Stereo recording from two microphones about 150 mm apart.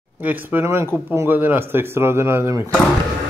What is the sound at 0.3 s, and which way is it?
A man's voice, 15° right (ahead or behind).